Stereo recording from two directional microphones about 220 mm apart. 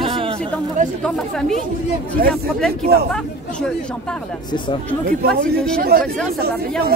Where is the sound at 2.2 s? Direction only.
45° right (ahead or behind).